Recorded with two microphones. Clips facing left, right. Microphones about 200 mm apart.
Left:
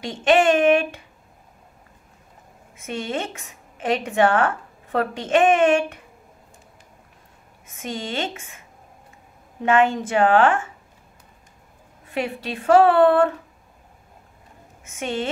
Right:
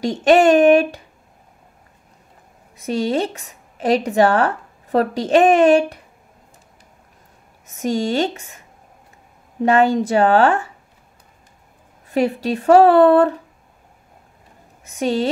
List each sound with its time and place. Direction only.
0.0 s a woman's voice: 40° right (ahead or behind)
2.7 s a woman's voice: 35° right (ahead or behind)
7.6 s a woman's voice: 40° right (ahead or behind)
12.1 s a woman's voice: 40° right (ahead or behind)
14.9 s a woman's voice: 35° right (ahead or behind)